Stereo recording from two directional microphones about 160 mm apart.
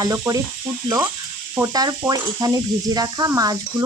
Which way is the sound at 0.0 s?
20° right (ahead or behind).